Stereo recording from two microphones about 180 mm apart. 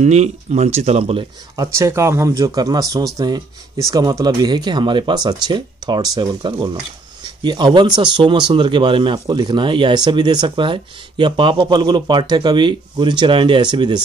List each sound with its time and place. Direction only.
0.0 s speech: 40° right (ahead or behind)
1.6 s speech: 15° right (ahead or behind)